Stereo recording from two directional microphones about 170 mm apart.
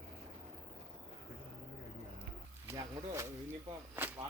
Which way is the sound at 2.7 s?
20° right (ahead or behind).